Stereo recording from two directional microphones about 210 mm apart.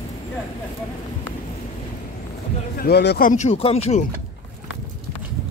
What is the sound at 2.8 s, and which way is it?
Speech, 50° left (ahead or behind).